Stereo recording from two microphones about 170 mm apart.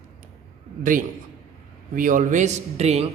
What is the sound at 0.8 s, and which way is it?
A man's voice, 50° right (ahead or behind).